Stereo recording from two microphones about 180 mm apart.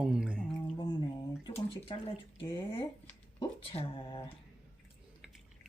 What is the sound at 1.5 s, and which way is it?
Speech, 30° left (ahead or behind).